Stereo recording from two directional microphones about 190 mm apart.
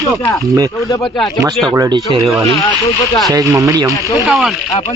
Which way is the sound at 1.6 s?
20° right (ahead or behind).